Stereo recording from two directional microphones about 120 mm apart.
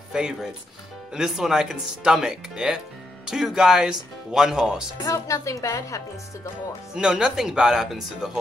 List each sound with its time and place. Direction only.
0.1 s speech: 5° right (ahead or behind)
5.0 s speech: 25° left (ahead or behind)
6.9 s speech: 10° right (ahead or behind)